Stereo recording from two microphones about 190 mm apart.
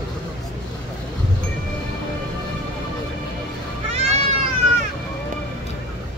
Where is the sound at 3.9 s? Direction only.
35° right (ahead or behind).